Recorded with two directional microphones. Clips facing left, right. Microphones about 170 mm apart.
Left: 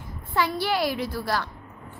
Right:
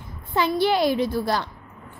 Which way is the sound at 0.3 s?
20° right (ahead or behind).